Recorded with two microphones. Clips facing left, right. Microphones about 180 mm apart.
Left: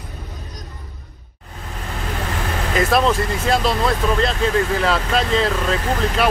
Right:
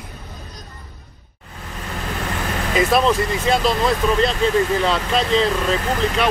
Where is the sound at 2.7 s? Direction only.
Centre (ahead or behind).